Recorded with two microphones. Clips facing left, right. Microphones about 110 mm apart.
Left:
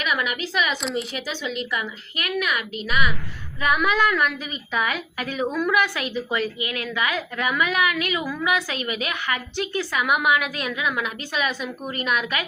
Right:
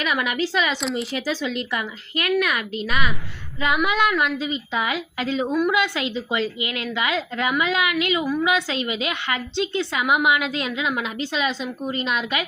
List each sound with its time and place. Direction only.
0.0 s speech: 30° right (ahead or behind)
3.8 s a woman's voice: 20° right (ahead or behind)